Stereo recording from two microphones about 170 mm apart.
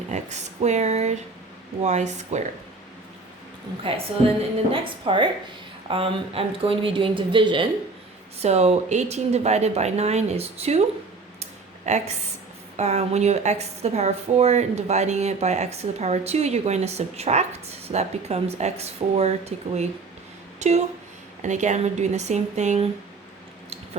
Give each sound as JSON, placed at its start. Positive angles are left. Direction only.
{"t": 0.1, "sound": "speech", "side_deg": -40}
{"t": 3.9, "sound": "a woman's voice", "side_deg": -30}
{"t": 11.9, "sound": "a woman's voice", "side_deg": -40}